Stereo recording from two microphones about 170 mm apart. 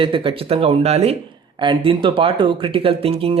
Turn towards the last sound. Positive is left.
turn(degrees=-35)  # may be behind; listen again after turning